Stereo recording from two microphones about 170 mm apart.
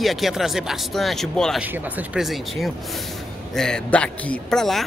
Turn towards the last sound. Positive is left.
turn(degrees=0)  # may be behind; listen again after turning